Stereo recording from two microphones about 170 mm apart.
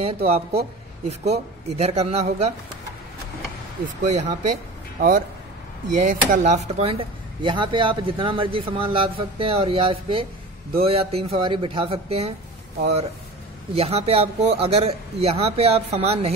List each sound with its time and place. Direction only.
0.0 s speech: 35° right (ahead or behind)
3.8 s speech: 40° right (ahead or behind)
5.9 s speech: 45° right (ahead or behind)
13.7 s speech: 35° right (ahead or behind)